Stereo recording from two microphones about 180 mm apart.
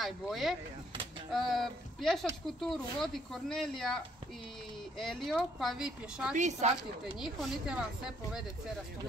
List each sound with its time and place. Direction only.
0.0 s speech: centre (ahead or behind)
6.3 s a woman's voice: 40° right (ahead or behind)
7.2 s speech: centre (ahead or behind)